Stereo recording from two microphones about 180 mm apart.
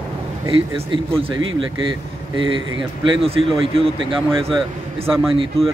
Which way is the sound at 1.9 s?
25° right (ahead or behind).